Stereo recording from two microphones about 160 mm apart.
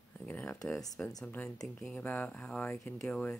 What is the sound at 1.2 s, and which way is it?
Speech, 10° left (ahead or behind).